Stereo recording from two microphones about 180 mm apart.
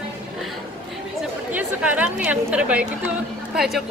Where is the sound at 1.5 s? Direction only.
10° right (ahead or behind).